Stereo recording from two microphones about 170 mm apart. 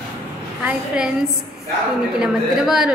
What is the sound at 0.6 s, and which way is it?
Speech, 5° right (ahead or behind).